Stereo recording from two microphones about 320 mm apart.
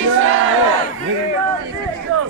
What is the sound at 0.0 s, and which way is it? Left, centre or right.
Battle cry, right.